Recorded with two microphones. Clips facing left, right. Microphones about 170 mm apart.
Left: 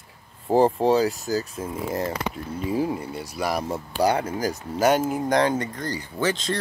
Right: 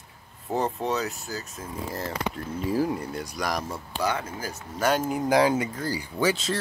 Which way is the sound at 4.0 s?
35° left (ahead or behind).